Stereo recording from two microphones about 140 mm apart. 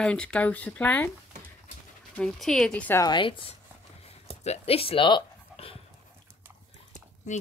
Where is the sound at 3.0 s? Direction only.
35° left (ahead or behind).